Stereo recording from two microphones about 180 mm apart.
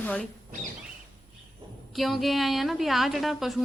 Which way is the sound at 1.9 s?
Centre (ahead or behind).